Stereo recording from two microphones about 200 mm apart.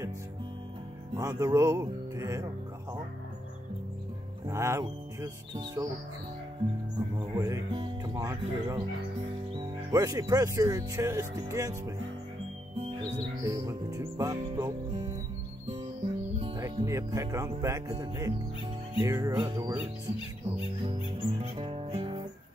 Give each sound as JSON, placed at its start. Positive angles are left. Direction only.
{"t": 1.1, "sound": "music", "side_deg": -15}
{"t": 4.5, "sound": "music", "side_deg": -15}
{"t": 7.2, "sound": "speech", "side_deg": -20}
{"t": 12.7, "sound": "music", "side_deg": -25}
{"t": 16.3, "sound": "speech", "side_deg": -20}
{"t": 21.2, "sound": "music", "side_deg": -30}